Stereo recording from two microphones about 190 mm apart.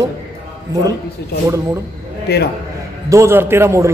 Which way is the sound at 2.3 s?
60° left (ahead or behind).